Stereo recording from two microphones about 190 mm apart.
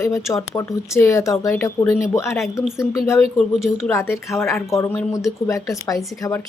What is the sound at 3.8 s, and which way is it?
Speech, 15° left (ahead or behind).